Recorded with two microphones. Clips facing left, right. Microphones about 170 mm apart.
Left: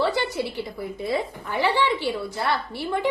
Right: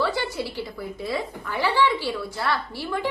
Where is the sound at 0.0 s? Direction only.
20° left (ahead or behind).